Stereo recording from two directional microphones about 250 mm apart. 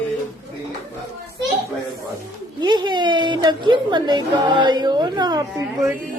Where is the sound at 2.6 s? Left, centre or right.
Centre.